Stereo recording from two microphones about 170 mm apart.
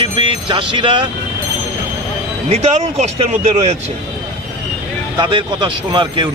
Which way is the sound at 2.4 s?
40° right (ahead or behind).